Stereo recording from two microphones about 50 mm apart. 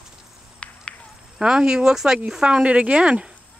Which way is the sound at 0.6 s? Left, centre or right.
Left.